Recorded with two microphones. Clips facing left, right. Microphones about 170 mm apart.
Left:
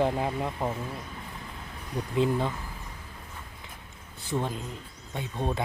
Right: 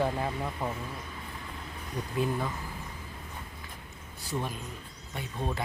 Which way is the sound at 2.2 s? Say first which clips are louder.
Left 5 dB; 25° left (ahead or behind).